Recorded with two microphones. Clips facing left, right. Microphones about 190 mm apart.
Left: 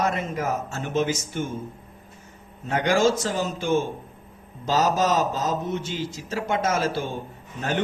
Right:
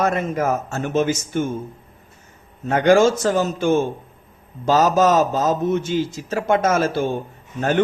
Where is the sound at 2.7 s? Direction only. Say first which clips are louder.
Right 6 dB; 50° right (ahead or behind).